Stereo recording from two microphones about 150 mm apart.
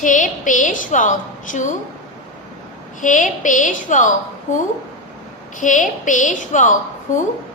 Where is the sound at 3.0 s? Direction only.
60° left (ahead or behind).